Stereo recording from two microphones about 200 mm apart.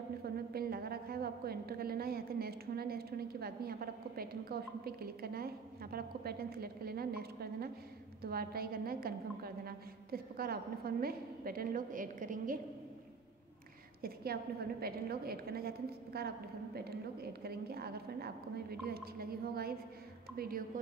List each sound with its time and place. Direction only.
0.5 s a woman's voice: 50° right (ahead or behind)
14.0 s a woman's voice: 50° right (ahead or behind)